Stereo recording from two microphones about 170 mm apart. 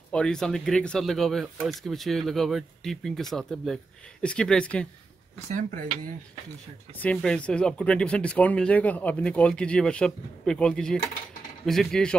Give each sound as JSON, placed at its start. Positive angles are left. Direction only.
{"t": 0.1, "sound": "speech", "side_deg": 5}
{"t": 5.8, "sound": "speech", "side_deg": -50}
{"t": 7.0, "sound": "speech", "side_deg": 5}